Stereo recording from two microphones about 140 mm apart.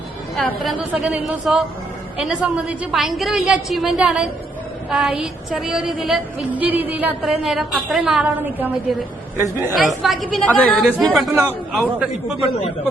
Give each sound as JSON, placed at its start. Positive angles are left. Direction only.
{"t": 0.3, "sound": "a woman's voice", "side_deg": 0}
{"t": 9.7, "sound": "a woman's voice", "side_deg": 0}